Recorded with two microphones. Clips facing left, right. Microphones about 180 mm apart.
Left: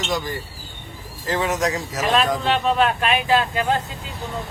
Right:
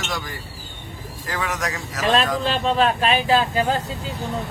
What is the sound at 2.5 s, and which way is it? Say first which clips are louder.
Speech: even; 30° right (ahead or behind).